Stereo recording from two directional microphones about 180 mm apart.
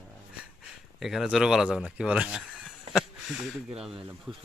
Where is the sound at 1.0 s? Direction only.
Centre (ahead or behind).